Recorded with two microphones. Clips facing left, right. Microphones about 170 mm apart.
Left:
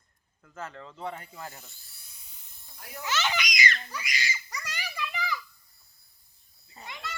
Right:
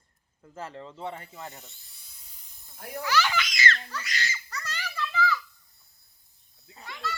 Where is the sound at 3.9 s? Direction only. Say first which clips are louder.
Right 1 dB; 10° left (ahead or behind).